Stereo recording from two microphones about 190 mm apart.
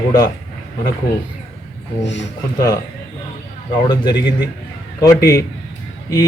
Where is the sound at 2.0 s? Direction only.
70° left (ahead or behind).